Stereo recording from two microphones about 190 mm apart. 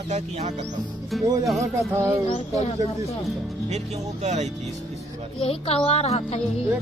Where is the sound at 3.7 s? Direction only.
35° right (ahead or behind).